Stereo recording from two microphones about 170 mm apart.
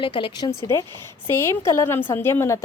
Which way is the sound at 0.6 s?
15° left (ahead or behind).